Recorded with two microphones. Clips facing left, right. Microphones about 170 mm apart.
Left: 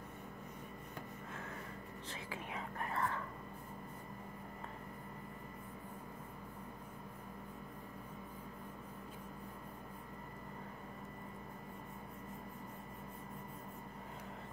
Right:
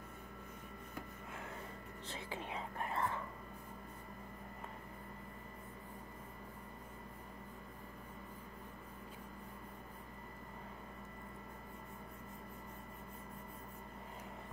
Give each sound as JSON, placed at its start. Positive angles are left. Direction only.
{"t": 2.0, "sound": "speech", "side_deg": -30}